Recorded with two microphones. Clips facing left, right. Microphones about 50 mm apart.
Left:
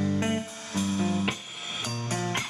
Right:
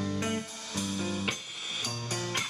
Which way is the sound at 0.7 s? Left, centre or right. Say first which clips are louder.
Left 6 dB; left.